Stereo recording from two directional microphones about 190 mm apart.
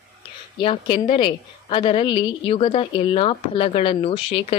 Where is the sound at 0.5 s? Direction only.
25° left (ahead or behind).